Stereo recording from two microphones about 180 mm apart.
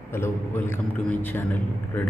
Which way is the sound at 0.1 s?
10° left (ahead or behind).